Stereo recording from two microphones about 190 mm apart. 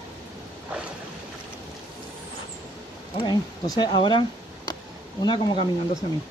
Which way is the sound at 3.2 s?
25° left (ahead or behind).